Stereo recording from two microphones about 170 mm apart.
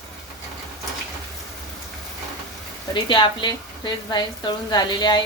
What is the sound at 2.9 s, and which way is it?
A woman's voice, 30° left (ahead or behind).